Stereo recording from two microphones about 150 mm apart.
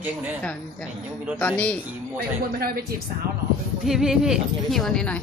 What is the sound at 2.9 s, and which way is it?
Speech, 85° right.